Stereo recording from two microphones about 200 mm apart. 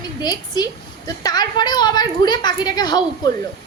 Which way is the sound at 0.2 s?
20° left (ahead or behind).